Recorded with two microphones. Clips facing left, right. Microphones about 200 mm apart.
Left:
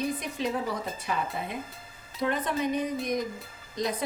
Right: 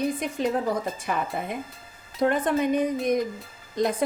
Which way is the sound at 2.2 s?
50° right (ahead or behind).